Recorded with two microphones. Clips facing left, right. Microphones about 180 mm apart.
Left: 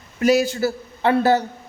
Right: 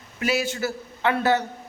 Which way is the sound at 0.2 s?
40° left (ahead or behind).